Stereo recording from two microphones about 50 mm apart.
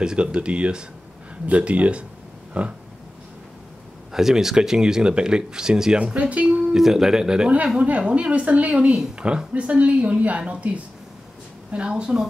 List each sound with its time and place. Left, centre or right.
0.0 s a woman's voice: centre
4.1 s speech: centre
6.7 s speech: centre
8.1 s a woman's voice: right
11.7 s speech: centre